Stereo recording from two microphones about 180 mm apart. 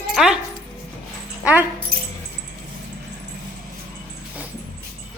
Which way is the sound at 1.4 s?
10° right (ahead or behind).